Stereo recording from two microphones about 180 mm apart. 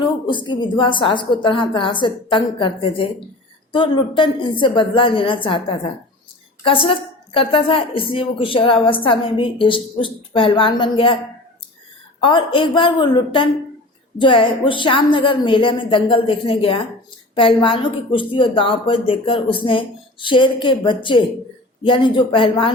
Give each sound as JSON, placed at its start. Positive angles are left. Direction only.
{"t": 0.3, "sound": "a woman's voice", "side_deg": 25}
{"t": 7.3, "sound": "a woman's voice", "side_deg": 30}
{"t": 12.2, "sound": "a woman's voice", "side_deg": 30}